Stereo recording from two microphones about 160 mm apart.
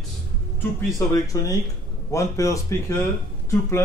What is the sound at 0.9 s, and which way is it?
Speech, 20° left (ahead or behind).